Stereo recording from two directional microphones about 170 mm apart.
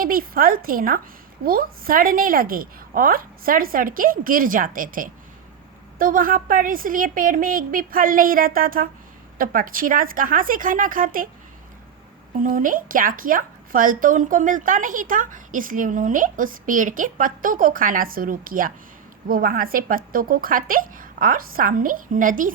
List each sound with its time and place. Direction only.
0.0 s a woman's voice: 60° right (ahead or behind)
12.4 s a woman's voice: 50° right (ahead or behind)